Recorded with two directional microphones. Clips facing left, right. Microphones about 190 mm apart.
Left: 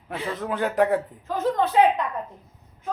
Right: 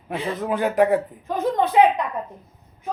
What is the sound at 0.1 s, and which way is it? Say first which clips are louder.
Speech: right 4 dB; 15° right (ahead or behind).